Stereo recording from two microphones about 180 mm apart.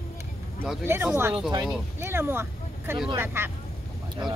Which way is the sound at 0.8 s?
15° right (ahead or behind).